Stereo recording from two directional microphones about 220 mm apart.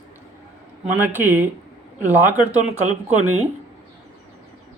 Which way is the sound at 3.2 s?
75° right (ahead or behind).